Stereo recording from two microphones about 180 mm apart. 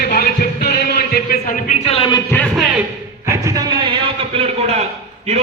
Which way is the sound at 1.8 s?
30° left (ahead or behind).